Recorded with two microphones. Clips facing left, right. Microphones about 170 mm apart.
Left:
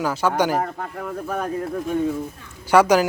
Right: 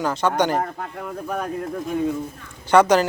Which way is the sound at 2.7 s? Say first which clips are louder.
Even; 10° left (ahead or behind).